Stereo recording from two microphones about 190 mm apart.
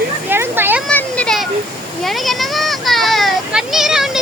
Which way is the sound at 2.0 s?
Centre (ahead or behind).